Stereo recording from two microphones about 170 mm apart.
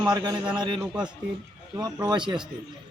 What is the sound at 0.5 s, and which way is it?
Speech, 25° right (ahead or behind).